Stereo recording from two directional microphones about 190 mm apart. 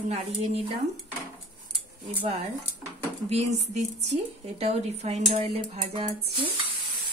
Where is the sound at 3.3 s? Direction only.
35° right (ahead or behind).